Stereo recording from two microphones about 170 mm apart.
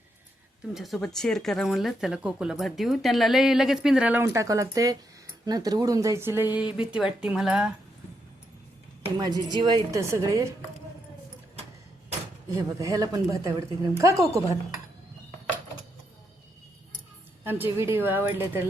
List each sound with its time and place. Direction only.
0.7 s speech: centre (ahead or behind)
9.0 s speech: 25° right (ahead or behind)
12.5 s speech: 20° right (ahead or behind)
17.4 s a woman's voice: 15° right (ahead or behind)